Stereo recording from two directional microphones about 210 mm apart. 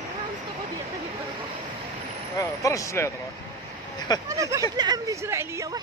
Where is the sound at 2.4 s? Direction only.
15° left (ahead or behind).